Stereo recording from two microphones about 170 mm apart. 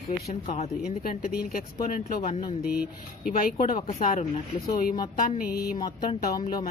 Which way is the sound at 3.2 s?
60° left (ahead or behind).